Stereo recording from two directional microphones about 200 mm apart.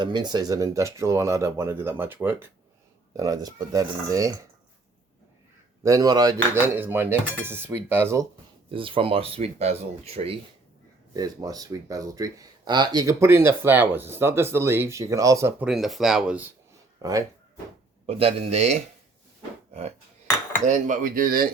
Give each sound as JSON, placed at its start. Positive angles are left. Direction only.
{"t": 0.0, "sound": "speech", "side_deg": -20}
{"t": 5.8, "sound": "speech", "side_deg": -15}
{"t": 8.7, "sound": "speech", "side_deg": -25}
{"t": 11.1, "sound": "speech", "side_deg": -20}
{"t": 17.0, "sound": "speech", "side_deg": -15}
{"t": 18.0, "sound": "speech", "side_deg": -30}
{"t": 20.7, "sound": "speech", "side_deg": -40}